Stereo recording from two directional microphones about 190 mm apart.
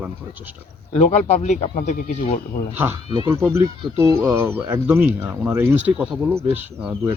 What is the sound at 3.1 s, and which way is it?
Speech, 20° right (ahead or behind).